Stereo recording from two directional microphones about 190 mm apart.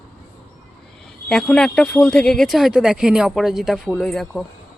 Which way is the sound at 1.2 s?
5° left (ahead or behind).